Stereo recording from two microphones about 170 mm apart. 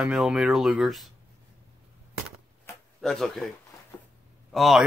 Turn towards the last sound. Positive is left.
turn(degrees=0)  # may be behind; listen again after turning